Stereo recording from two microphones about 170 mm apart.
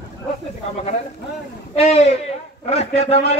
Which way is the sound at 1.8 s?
40° left (ahead or behind).